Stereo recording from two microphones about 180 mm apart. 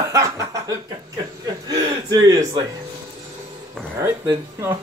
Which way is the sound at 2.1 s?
20° right (ahead or behind).